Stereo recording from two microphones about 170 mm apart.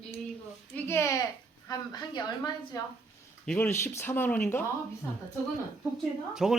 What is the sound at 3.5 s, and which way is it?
Speech, 15° left (ahead or behind).